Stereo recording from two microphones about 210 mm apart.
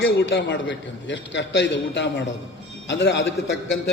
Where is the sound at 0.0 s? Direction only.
55° left (ahead or behind).